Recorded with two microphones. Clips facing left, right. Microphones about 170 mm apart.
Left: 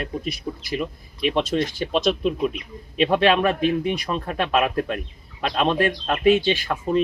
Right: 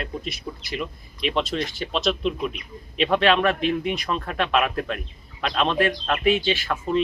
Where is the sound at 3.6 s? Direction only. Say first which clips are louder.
Left 2 dB; 35° left (ahead or behind).